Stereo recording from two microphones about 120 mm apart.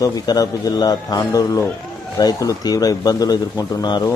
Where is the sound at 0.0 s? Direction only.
30° left (ahead or behind).